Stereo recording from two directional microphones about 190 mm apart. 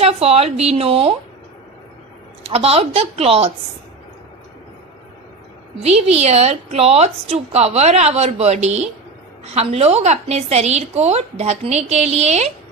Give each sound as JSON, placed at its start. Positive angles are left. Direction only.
{"t": 0.0, "sound": "a woman's voice", "side_deg": -30}
{"t": 2.4, "sound": "a woman's voice", "side_deg": -30}
{"t": 5.8, "sound": "a woman's voice", "side_deg": -35}